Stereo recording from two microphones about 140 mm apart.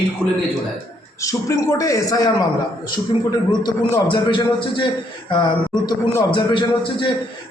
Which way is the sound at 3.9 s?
20° left (ahead or behind).